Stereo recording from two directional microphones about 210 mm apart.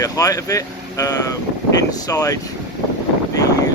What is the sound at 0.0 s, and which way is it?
Speech, 15° left (ahead or behind).